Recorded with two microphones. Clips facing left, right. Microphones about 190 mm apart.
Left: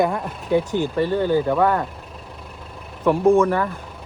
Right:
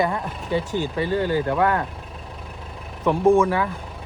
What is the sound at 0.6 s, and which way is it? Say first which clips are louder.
Speech: left 2 dB; 55° left (ahead or behind).